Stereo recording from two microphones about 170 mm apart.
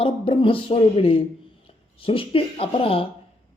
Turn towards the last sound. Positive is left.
turn(degrees=35)  # may be behind; listen again after turning